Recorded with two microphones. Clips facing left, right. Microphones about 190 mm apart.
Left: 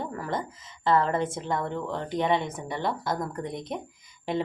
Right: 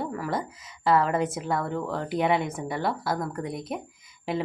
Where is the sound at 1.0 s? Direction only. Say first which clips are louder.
Right 1 dB; 25° left (ahead or behind).